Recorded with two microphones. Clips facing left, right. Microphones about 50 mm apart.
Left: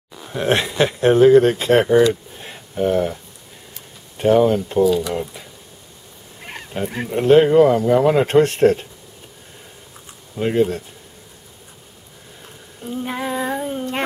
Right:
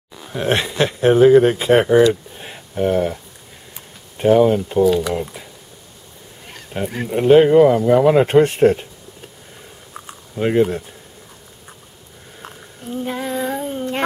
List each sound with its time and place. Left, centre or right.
0.3 s speech: centre
2.3 s a sound: centre
4.2 s speech: centre
4.8 s speech: right
6.7 s speech: centre
10.3 s speech: centre
13.1 s child singing: centre